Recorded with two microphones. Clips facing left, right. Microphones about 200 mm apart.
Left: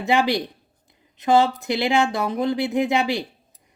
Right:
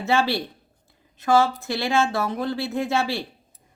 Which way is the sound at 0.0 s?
15° left (ahead or behind).